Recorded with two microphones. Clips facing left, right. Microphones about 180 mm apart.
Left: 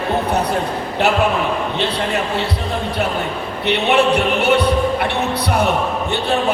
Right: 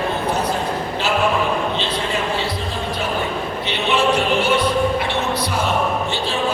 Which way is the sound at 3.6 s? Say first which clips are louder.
Left 5 dB; 60° left (ahead or behind).